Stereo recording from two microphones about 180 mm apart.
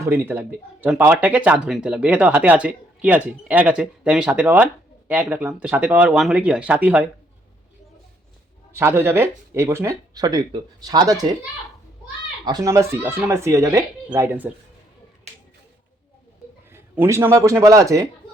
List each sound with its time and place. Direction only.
0.0 s speech: 10° right (ahead or behind)
8.7 s speech: 15° right (ahead or behind)
12.5 s speech: 20° right (ahead or behind)
16.7 s speech: 15° right (ahead or behind)